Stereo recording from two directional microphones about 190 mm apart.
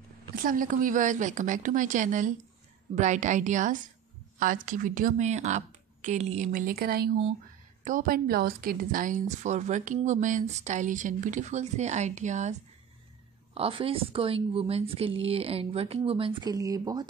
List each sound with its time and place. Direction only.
0.4 s a woman's voice: 45° right (ahead or behind)
13.6 s a woman's voice: 30° right (ahead or behind)